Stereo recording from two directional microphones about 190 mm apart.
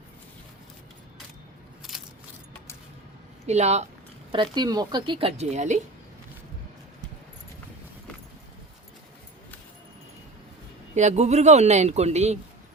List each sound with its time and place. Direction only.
3.4 s speech: 35° right (ahead or behind)
4.5 s speech: 20° right (ahead or behind); by 5.8 s 40° right (ahead or behind)
10.9 s a man's voice: 35° right (ahead or behind)